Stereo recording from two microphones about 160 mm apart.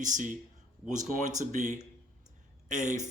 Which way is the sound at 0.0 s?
50° right (ahead or behind).